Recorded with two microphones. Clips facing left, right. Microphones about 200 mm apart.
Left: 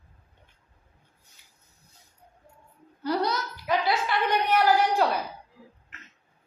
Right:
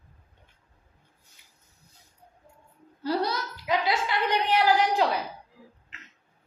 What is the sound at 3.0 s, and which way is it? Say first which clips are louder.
A woman's voice: left 1 dB; 25° right (ahead or behind).